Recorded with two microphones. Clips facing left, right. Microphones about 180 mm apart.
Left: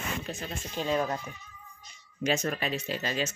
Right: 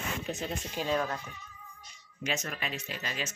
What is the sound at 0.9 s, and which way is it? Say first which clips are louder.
Speech: left 4 dB; 15° left (ahead or behind).